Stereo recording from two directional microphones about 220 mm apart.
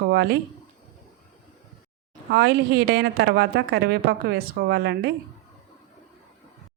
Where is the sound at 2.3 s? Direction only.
45° right (ahead or behind).